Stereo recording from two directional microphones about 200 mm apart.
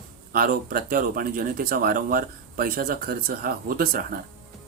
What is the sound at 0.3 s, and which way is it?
Speech, 45° right (ahead or behind).